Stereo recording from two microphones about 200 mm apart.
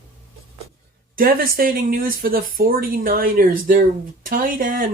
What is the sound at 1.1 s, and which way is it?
Speech, 45° right (ahead or behind).